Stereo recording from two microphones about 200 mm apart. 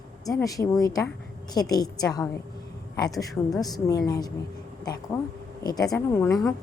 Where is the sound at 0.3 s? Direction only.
15° left (ahead or behind).